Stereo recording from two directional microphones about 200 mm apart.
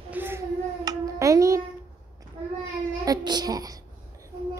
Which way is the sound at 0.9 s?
15° right (ahead or behind).